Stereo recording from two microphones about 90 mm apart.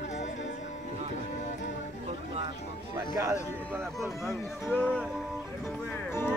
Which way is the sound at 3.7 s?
30° right (ahead or behind).